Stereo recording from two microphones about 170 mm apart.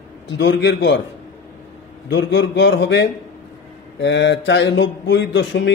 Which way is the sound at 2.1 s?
90° left.